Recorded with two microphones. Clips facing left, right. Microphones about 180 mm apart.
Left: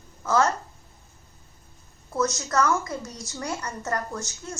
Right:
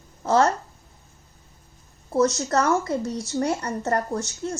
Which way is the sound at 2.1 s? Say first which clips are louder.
Right 4 dB; 35° right (ahead or behind).